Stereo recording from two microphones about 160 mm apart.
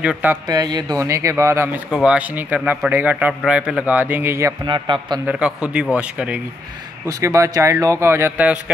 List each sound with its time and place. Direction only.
0.0 s a man's voice: 10° right (ahead or behind)
0.5 s speech: 25° right (ahead or behind)
1.9 s a man's voice: 5° right (ahead or behind)
4.6 s speech: 30° right (ahead or behind)
5.2 s a man's voice: 5° right (ahead or behind)
7.1 s speech: 20° right (ahead or behind)